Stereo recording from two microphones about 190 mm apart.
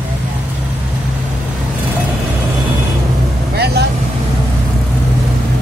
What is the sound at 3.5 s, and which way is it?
Vehicle, 60° right (ahead or behind).